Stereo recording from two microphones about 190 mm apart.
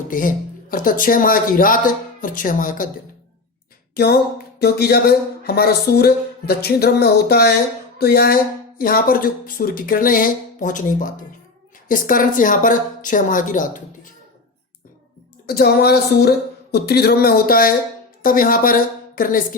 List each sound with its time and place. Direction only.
0.1 s speech: 45° left (ahead or behind)
3.9 s speech: 55° left (ahead or behind)
15.4 s a woman's voice: 55° left (ahead or behind)